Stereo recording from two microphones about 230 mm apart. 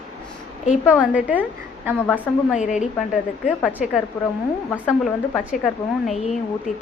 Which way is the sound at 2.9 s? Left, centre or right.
Centre.